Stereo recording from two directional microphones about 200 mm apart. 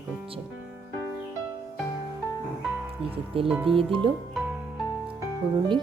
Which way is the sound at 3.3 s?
25° right (ahead or behind).